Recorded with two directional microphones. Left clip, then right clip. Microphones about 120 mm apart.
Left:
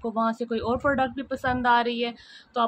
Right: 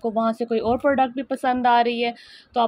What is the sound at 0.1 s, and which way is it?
Speech, 30° right (ahead or behind).